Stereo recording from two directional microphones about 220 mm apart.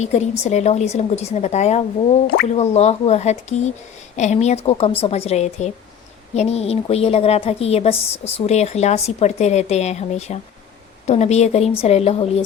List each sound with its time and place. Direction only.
0.0 s a woman's voice: 30° left (ahead or behind)